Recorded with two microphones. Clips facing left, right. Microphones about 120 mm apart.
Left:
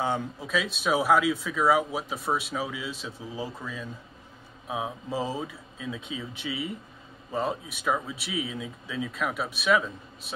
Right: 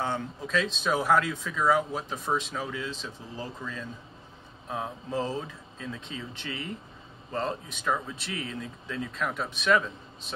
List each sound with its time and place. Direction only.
0.0 s speech: 10° left (ahead or behind)